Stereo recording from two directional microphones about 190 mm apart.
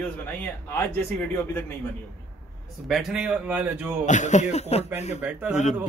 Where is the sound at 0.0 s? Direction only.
10° left (ahead or behind).